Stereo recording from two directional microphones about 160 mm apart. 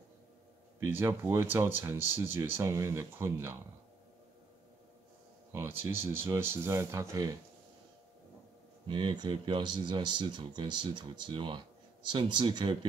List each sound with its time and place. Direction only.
0.8 s speech: 15° right (ahead or behind)
5.5 s speech: 15° right (ahead or behind)
8.8 s speech: 30° right (ahead or behind)